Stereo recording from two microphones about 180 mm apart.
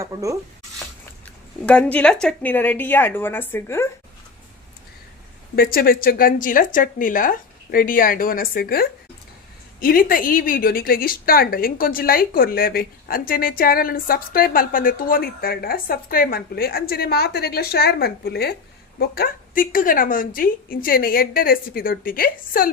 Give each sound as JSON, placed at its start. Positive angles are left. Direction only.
{"t": 0.0, "sound": "speech", "side_deg": -15}
{"t": 1.2, "sound": "speech", "side_deg": 5}
{"t": 5.5, "sound": "a woman's voice", "side_deg": 55}